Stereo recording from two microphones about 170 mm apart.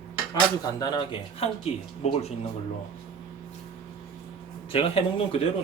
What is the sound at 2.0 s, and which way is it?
Speech, 40° left (ahead or behind).